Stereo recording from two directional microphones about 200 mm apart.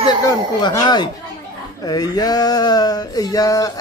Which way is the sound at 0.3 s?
20° left (ahead or behind).